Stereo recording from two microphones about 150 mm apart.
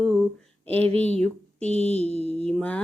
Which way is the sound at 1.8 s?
45° left (ahead or behind).